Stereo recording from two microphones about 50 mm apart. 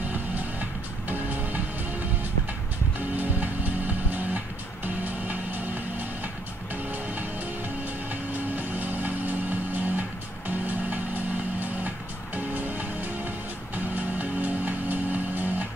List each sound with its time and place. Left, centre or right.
0.1 s music: right
3.2 s music: right
8.3 s music: right
12.4 s music: right
13.9 s music: right